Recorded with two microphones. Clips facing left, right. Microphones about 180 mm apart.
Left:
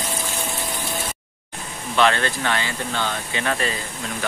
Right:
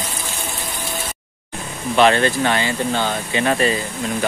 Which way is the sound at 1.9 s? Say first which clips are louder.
Right 5 dB; 20° right (ahead or behind).